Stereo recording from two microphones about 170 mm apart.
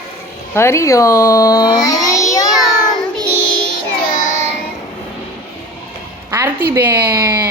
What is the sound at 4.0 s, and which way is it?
Child singing, 50° left (ahead or behind).